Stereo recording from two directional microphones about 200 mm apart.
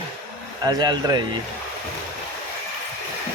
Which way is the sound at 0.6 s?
20° right (ahead or behind).